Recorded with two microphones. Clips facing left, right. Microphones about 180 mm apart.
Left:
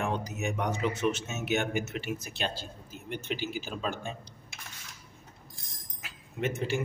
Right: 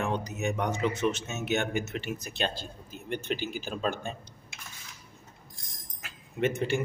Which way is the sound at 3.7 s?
Centre (ahead or behind).